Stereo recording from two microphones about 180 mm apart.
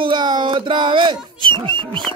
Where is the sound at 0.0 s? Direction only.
25° right (ahead or behind).